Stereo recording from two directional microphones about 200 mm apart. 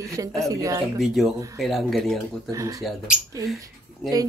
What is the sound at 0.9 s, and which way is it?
Speech, centre (ahead or behind).